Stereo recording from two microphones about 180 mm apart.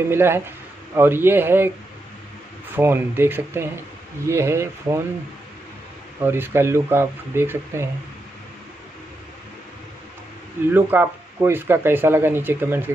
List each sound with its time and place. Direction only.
0.1 s speech: 15° right (ahead or behind)
2.7 s speech: 10° right (ahead or behind)
6.2 s speech: 10° right (ahead or behind)
10.7 s speech: 10° right (ahead or behind)